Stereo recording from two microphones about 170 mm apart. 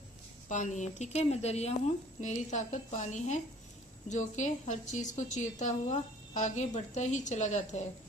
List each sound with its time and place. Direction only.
0.5 s a woman's voice: 45° left (ahead or behind)